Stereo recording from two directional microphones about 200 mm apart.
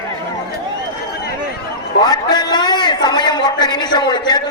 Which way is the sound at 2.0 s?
20° left (ahead or behind).